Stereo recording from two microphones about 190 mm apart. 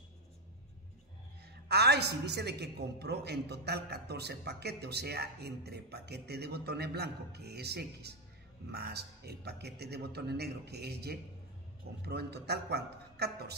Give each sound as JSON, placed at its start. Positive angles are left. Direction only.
{"t": 1.5, "sound": "a woman's voice", "side_deg": -60}